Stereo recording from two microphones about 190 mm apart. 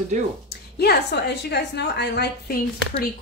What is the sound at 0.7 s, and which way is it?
A woman's voice, 60° left (ahead or behind).